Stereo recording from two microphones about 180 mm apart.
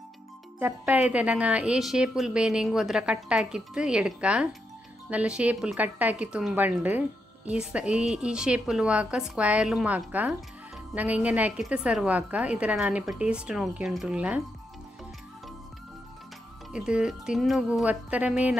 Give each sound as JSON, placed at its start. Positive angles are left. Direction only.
{"t": 0.6, "sound": "a woman's voice", "side_deg": -10}
{"t": 16.7, "sound": "a woman's voice", "side_deg": -5}